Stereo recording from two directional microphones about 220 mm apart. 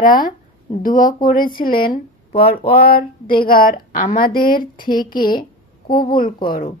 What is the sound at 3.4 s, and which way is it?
Female singing, 40° left (ahead or behind).